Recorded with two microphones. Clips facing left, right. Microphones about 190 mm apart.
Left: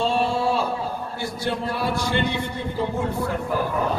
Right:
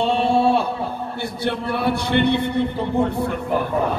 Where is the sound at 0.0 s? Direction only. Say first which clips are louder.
Right 4 dB; 60° right (ahead or behind).